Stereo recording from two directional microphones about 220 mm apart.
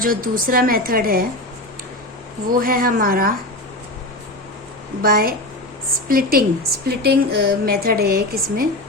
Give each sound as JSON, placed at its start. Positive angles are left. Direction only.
{"t": 0.0, "sound": "a woman's voice", "side_deg": -40}
{"t": 2.5, "sound": "a woman's voice", "side_deg": -40}
{"t": 5.0, "sound": "a woman's voice", "side_deg": -40}